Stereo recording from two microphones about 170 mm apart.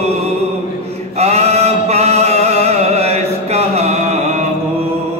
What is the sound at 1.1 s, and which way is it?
Chant, 40° right (ahead or behind).